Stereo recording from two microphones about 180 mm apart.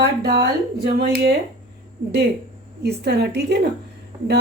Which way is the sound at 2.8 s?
65° right (ahead or behind).